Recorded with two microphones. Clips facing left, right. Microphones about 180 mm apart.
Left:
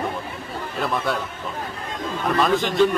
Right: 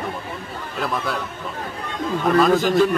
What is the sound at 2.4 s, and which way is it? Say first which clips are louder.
Speech: right 4 dB; centre (ahead or behind).